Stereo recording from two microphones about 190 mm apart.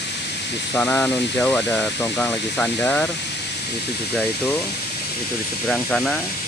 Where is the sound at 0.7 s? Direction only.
10° left (ahead or behind).